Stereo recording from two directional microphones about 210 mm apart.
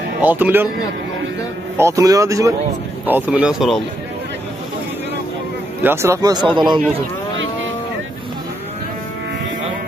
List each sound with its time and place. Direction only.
0.2 s speech: 10° right (ahead or behind)
1.8 s speech: 15° right (ahead or behind)
5.8 s speech: 10° right (ahead or behind)